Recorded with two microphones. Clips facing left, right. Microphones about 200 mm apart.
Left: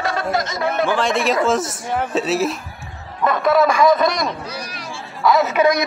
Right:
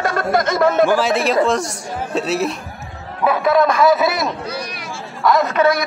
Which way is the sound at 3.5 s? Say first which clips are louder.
Even; centre (ahead or behind).